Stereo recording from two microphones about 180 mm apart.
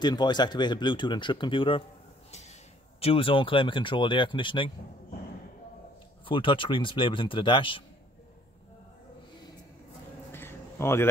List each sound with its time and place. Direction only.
0.0 s speech: 25° left (ahead or behind)
3.0 s speech: 30° left (ahead or behind)
6.2 s speech: 30° left (ahead or behind)
10.3 s a sound: 15° left (ahead or behind)